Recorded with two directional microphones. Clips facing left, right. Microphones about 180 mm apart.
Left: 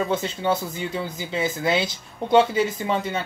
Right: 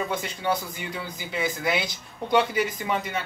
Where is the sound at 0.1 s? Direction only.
25° left (ahead or behind).